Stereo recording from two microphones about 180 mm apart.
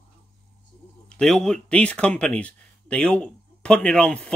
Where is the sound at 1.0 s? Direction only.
5° left (ahead or behind).